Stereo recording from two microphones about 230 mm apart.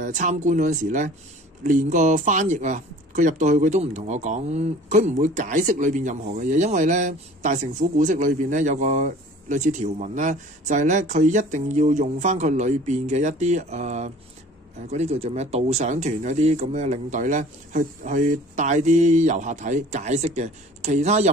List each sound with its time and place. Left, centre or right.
0.0 s speech: right